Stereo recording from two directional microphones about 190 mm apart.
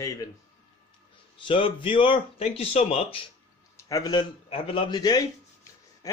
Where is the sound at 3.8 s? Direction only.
20° left (ahead or behind).